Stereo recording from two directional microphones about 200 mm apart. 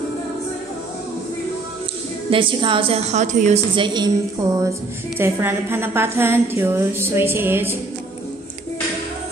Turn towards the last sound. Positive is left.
turn(degrees=-10)  # may be behind; listen again after turning